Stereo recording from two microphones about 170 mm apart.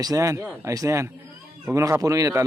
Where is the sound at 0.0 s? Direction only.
20° right (ahead or behind).